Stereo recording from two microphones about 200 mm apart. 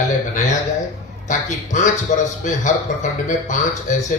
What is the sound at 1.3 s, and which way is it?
Speech, 40° left (ahead or behind).